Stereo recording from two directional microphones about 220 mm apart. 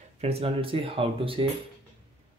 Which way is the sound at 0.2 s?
25° right (ahead or behind).